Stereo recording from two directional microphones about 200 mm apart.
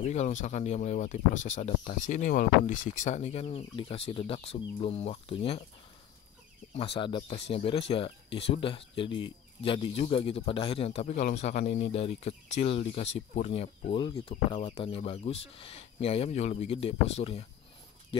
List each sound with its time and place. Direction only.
0.0 s speech: 35° left (ahead or behind)
6.7 s speech: 30° left (ahead or behind)